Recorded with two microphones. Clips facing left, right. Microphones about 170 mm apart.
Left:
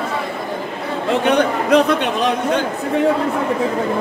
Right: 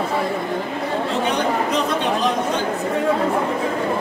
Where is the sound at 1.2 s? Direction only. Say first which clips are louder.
Left 8 dB; 60° left (ahead or behind).